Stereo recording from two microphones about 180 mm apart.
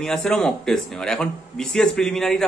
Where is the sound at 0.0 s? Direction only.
5° left (ahead or behind).